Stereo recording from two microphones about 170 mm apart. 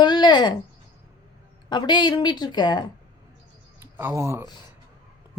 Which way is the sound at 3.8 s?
15° right (ahead or behind).